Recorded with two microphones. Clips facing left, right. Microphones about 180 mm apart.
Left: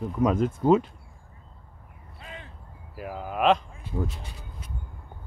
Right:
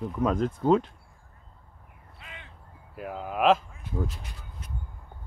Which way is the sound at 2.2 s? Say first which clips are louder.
Left 5 dB; 35° left (ahead or behind).